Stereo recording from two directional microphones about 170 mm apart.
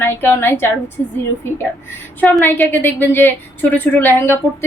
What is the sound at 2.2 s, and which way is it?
A woman's voice, 10° left (ahead or behind).